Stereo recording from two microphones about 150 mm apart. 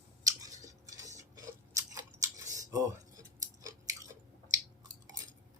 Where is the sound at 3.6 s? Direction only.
20° right (ahead or behind).